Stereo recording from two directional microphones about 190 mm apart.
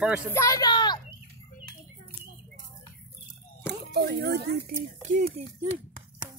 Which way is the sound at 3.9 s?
60° right (ahead or behind).